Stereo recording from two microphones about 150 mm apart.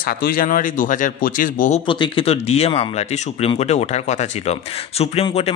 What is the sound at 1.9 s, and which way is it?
Speech, 35° left (ahead or behind).